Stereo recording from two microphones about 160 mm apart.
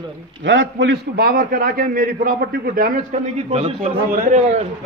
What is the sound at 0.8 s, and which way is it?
A man's voice, 85° right.